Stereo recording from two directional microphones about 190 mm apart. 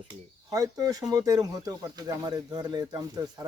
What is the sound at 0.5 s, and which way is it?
Speech, 20° right (ahead or behind).